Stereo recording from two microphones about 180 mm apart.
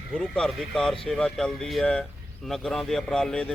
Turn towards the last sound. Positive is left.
turn(degrees=5)  # may be behind; listen again after turning